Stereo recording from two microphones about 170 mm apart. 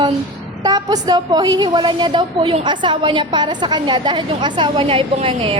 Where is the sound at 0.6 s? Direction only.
25° right (ahead or behind).